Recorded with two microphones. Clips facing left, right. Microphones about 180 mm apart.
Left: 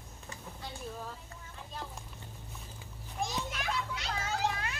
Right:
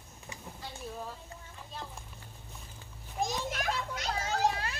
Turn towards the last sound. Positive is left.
turn(degrees=-35)  # may be behind; listen again after turning